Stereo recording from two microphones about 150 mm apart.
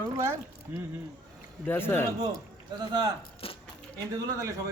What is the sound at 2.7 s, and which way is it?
Speech, 25° right (ahead or behind).